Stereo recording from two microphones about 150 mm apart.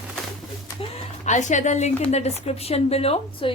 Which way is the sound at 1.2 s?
55° left (ahead or behind).